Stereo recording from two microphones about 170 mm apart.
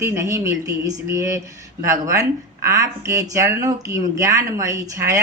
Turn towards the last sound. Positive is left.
turn(degrees=-20)  # may be behind; listen again after turning